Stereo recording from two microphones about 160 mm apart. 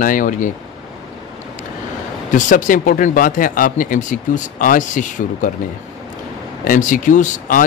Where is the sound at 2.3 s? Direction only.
55° left (ahead or behind).